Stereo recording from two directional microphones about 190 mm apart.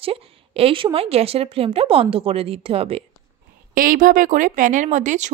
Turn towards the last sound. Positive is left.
turn(degrees=-40)  # may be behind; listen again after turning